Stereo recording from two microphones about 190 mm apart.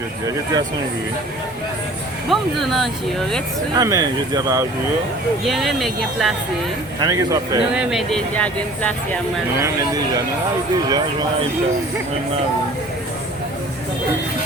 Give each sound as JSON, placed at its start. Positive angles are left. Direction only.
{"t": 2.3, "sound": "speech", "side_deg": 0}
{"t": 3.8, "sound": "speech", "side_deg": -20}
{"t": 5.5, "sound": "speech", "side_deg": 0}
{"t": 7.0, "sound": "speech", "side_deg": -20}
{"t": 7.7, "sound": "speech", "side_deg": -5}
{"t": 9.6, "sound": "speech", "side_deg": -15}